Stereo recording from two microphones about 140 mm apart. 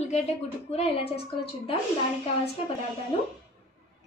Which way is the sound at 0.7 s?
45° left (ahead or behind).